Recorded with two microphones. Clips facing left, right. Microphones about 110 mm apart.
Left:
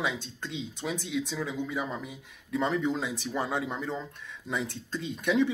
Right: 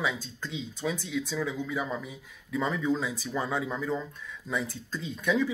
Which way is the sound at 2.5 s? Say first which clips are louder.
Even; 25° left (ahead or behind).